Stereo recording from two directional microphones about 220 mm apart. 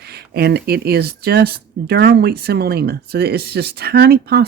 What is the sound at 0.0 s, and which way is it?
Speech, 45° right (ahead or behind).